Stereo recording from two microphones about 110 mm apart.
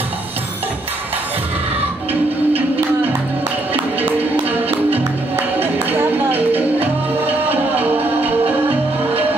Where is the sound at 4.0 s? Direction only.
15° right (ahead or behind).